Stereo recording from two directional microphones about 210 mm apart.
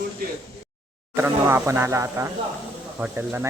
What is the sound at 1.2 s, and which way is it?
Speech, 10° right (ahead or behind).